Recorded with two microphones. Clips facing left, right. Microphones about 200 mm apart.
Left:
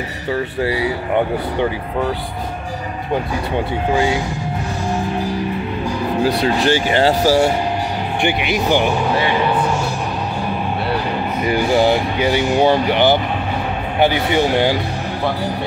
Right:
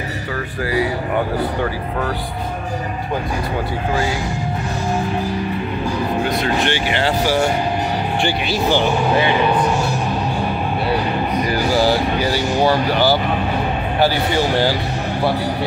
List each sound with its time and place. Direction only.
6.2 s speech: 35° left (ahead or behind)
8.2 s speech: 20° left (ahead or behind)
11.4 s speech: 20° left (ahead or behind)